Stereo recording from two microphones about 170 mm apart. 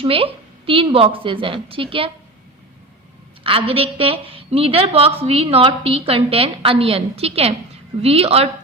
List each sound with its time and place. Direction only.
0.0 s a woman's voice: 35° right (ahead or behind)
3.4 s a woman's voice: 30° right (ahead or behind)